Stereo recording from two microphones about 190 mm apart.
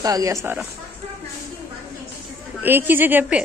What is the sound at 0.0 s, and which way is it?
Speech, 20° right (ahead or behind).